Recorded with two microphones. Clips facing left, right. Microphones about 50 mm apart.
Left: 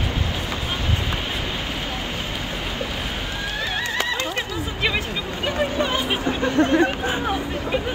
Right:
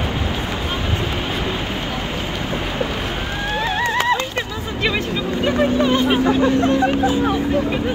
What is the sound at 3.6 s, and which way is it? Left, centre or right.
Horse, right.